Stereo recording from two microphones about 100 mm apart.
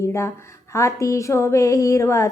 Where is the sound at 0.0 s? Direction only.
30° left (ahead or behind).